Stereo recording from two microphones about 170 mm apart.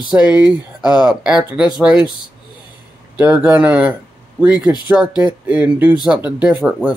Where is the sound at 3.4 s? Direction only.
10° right (ahead or behind).